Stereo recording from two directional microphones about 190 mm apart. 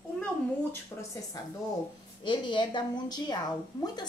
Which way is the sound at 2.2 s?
25° left (ahead or behind).